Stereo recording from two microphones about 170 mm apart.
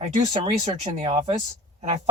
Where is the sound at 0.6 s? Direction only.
40° right (ahead or behind).